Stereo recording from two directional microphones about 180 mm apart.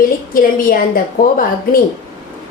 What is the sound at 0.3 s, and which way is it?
Speech, 50° left (ahead or behind).